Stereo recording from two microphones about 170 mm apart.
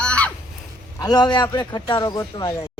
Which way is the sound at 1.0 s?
25° left (ahead or behind).